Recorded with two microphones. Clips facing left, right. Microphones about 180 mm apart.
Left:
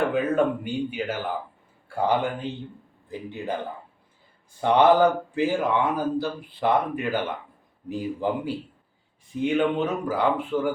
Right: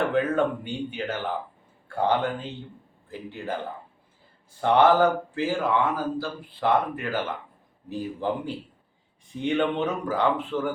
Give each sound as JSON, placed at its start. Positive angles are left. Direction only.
{"t": 0.1, "sound": "speech", "side_deg": 10}
{"t": 4.6, "sound": "speech", "side_deg": 15}